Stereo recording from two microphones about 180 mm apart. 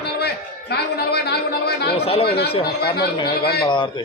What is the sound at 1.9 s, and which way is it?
Speech, 35° left (ahead or behind).